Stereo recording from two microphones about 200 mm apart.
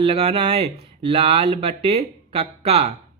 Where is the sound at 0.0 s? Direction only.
30° right (ahead or behind).